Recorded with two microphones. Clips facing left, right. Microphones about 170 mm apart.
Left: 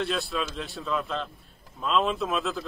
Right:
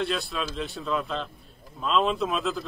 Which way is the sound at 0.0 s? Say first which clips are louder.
Even; centre (ahead or behind).